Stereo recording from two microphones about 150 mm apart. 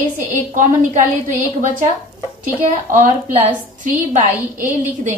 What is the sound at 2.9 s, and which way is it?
Speech, 55° right (ahead or behind).